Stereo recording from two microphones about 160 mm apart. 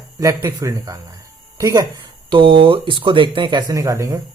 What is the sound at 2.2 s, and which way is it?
Speech, 30° right (ahead or behind).